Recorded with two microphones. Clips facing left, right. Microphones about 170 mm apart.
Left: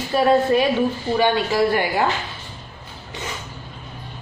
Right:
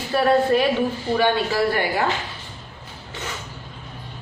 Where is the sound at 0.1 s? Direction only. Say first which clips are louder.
Left 1 dB; 15° left (ahead or behind).